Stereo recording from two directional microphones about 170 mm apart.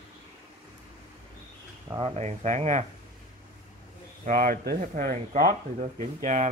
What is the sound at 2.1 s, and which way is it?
Speech, 40° right (ahead or behind).